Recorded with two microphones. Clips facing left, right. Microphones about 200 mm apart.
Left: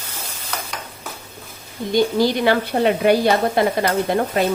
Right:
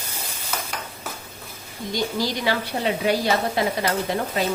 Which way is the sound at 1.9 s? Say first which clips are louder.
Left 8 dB; 55° left (ahead or behind).